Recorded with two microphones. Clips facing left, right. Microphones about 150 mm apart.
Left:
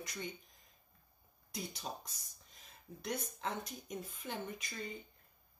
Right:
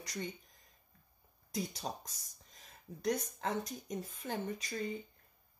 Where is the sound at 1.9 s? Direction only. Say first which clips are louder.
Right 3 dB; 40° right (ahead or behind).